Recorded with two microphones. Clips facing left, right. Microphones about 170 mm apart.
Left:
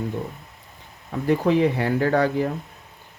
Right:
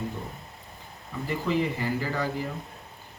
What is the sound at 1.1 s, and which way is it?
Speech, 65° left (ahead or behind).